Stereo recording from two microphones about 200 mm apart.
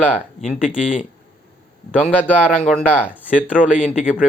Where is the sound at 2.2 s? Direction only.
Centre (ahead or behind).